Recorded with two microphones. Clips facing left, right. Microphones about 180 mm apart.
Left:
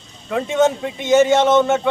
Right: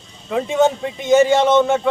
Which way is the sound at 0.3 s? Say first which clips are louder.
Even; centre (ahead or behind).